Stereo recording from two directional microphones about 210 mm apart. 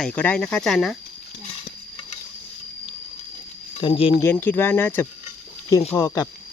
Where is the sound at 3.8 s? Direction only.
25° left (ahead or behind).